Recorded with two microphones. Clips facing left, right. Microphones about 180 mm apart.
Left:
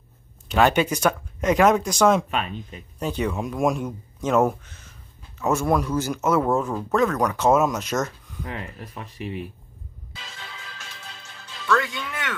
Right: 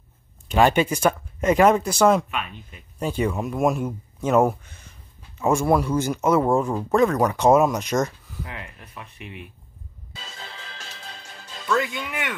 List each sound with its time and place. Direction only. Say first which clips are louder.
0.5 s speech: right 1 dB; 5° right (ahead or behind)
2.3 s speech: left 4 dB; 35° left (ahead or behind)
3.0 s speech: right 1 dB; 10° right (ahead or behind)
8.5 s speech: left 5 dB; 35° left (ahead or behind)
10.1 s music: right 2 dB; 35° right (ahead or behind)
11.6 s speech: even; 15° right (ahead or behind)